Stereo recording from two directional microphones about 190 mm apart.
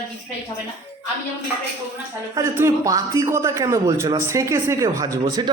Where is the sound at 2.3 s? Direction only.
15° right (ahead or behind).